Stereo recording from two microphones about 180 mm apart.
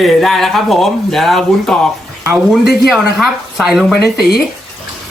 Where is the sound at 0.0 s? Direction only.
Centre (ahead or behind).